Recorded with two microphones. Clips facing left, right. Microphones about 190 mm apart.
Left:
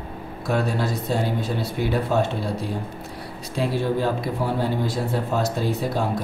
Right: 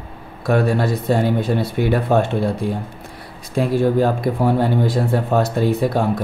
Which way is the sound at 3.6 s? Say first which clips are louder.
Right 7 dB; 50° right (ahead or behind).